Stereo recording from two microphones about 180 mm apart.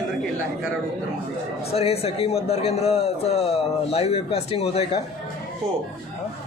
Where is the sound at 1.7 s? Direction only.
35° left (ahead or behind).